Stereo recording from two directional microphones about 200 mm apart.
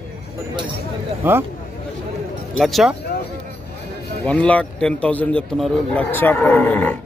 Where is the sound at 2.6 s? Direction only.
Centre (ahead or behind).